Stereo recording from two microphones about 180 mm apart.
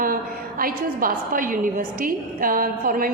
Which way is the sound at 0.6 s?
50° right (ahead or behind).